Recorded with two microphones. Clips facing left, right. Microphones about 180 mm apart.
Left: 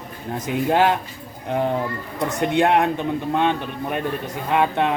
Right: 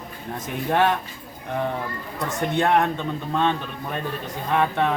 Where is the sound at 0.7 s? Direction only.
20° left (ahead or behind).